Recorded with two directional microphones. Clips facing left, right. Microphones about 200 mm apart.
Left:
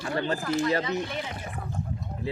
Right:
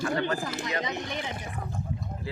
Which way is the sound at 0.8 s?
15° right (ahead or behind).